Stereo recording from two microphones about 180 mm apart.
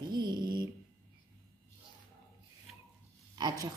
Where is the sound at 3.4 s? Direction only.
20° right (ahead or behind).